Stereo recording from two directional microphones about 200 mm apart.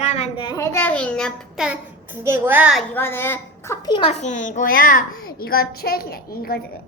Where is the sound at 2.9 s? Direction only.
10° left (ahead or behind).